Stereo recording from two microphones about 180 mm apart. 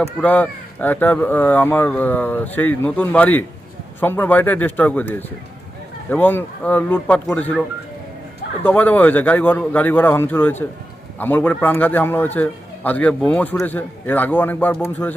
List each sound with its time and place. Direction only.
0.0 s a man's voice: 10° left (ahead or behind)
8.6 s a man's voice: 10° left (ahead or behind)